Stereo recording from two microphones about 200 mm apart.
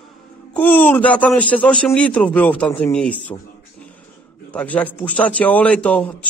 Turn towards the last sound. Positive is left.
turn(degrees=5)  # may be behind; listen again after turning